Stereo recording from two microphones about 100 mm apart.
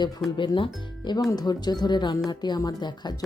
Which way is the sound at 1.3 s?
40° left (ahead or behind).